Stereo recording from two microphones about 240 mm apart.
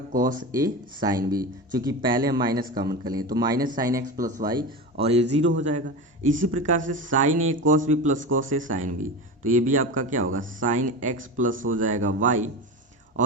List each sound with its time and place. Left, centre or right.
0.1 s speech: right
0.5 s a man's voice: centre; by 12.5 s right